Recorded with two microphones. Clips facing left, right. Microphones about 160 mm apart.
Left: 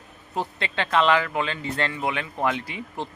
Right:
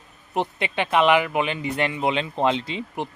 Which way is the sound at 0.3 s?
15° right (ahead or behind).